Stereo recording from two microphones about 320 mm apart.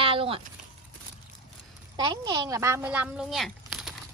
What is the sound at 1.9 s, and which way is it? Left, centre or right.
Speech, centre.